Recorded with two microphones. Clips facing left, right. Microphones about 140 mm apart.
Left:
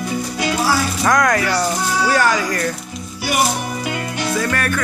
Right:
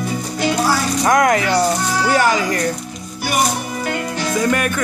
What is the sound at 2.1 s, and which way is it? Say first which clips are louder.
Speech: right 2 dB; 20° right (ahead or behind).